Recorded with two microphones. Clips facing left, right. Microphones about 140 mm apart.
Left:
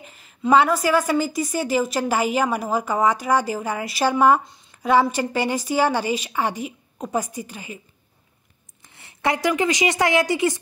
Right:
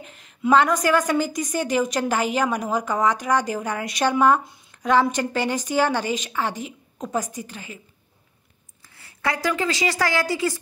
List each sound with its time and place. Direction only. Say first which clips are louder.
0.0 s a woman's voice: even; centre (ahead or behind)
8.8 s a woman's voice: left 3 dB; 20° left (ahead or behind)